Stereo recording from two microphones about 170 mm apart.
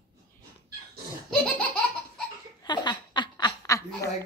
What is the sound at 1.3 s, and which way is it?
Laughter, 5° left (ahead or behind).